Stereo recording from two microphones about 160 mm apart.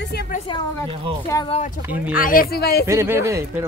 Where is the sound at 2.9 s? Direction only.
20° right (ahead or behind).